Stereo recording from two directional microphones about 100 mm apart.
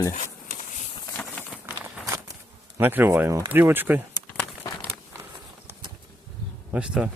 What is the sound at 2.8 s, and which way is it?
Speech, 20° right (ahead or behind).